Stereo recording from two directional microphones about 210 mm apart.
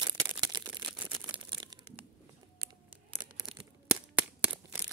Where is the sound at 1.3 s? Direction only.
20° right (ahead or behind).